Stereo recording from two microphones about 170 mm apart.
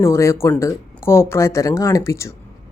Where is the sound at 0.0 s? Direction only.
15° left (ahead or behind).